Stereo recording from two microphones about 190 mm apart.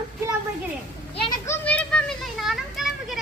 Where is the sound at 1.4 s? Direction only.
5° left (ahead or behind).